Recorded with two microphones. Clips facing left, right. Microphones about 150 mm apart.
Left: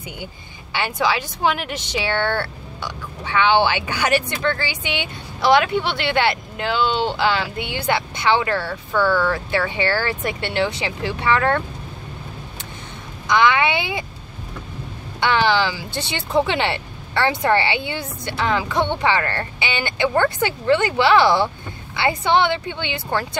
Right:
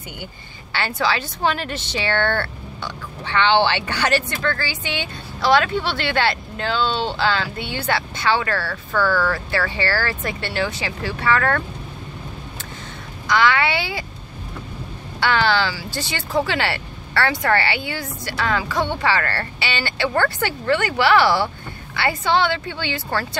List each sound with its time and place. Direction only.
0.7 s speech: 15° left (ahead or behind)
13.3 s speech: 20° left (ahead or behind)
15.1 s speech: 20° left (ahead or behind)